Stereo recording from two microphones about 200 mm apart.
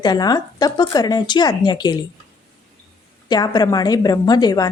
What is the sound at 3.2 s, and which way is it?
Speech, 20° left (ahead or behind).